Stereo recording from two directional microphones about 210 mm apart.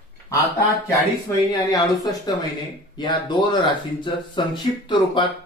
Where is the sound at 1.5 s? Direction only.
15° left (ahead or behind).